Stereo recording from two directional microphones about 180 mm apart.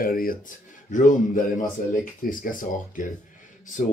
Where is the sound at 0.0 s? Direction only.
55° left (ahead or behind).